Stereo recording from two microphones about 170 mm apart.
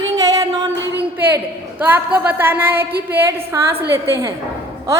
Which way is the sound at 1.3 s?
10° right (ahead or behind).